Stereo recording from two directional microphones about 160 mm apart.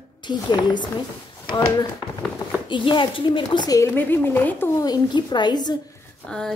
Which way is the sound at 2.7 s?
30° left (ahead or behind).